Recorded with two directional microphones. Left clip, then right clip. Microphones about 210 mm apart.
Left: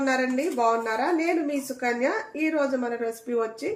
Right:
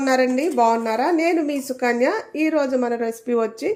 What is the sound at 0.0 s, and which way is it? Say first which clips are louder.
A woman's voice: right 6 dB; 50° right (ahead or behind).